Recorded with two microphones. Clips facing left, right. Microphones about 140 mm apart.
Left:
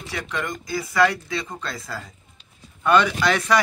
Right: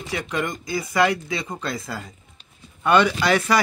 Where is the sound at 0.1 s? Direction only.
20° right (ahead or behind).